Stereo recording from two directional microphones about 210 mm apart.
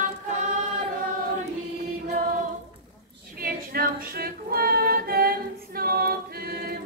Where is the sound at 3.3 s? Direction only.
45° right (ahead or behind).